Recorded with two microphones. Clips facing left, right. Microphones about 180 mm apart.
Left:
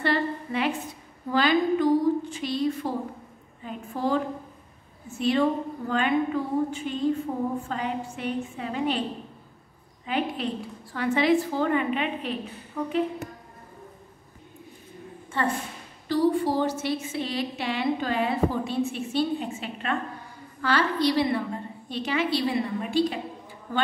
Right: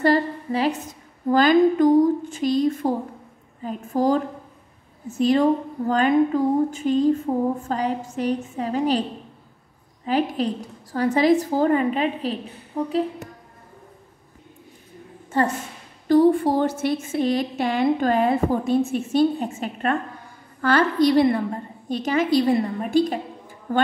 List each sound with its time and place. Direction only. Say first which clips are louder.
0.0 s a sound: right 6 dB; 40° right (ahead or behind)
1.3 s a woman's voice: right 6 dB; 45° right (ahead or behind)
10.0 s a woman's voice: right 6 dB; 35° right (ahead or behind)
15.3 s a woman's voice: right 6 dB; 40° right (ahead or behind)
16.1 s a woman's voice: right 7 dB; 50° right (ahead or behind)